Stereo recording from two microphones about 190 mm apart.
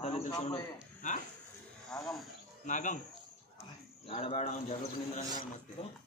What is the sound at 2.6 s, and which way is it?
Speech, 40° left (ahead or behind).